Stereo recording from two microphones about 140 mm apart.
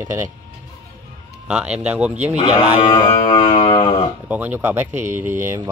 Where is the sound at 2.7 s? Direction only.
35° left (ahead or behind).